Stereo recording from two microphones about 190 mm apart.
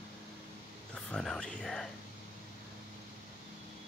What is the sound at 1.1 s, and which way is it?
Speech, 5° left (ahead or behind).